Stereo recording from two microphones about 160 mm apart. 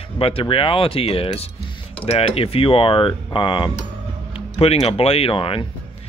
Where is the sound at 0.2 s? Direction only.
35° left (ahead or behind).